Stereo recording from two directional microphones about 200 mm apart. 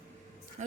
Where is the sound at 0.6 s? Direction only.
35° right (ahead or behind).